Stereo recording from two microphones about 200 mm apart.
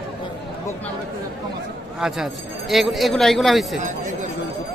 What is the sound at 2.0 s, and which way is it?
Speech, centre (ahead or behind).